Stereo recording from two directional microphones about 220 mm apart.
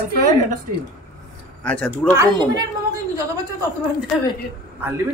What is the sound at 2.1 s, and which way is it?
Speech, 15° right (ahead or behind).